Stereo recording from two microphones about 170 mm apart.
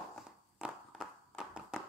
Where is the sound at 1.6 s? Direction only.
5° right (ahead or behind).